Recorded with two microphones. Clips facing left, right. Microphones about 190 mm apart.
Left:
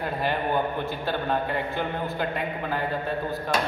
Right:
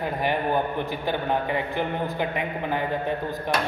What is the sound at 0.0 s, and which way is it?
A man's voice, 15° right (ahead or behind).